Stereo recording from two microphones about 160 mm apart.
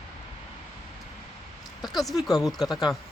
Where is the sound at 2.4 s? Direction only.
25° left (ahead or behind).